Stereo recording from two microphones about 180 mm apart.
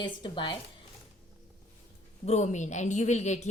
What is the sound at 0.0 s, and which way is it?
Speech, 25° left (ahead or behind).